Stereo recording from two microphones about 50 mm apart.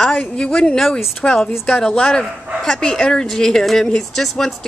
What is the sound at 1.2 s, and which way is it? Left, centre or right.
Speech, left.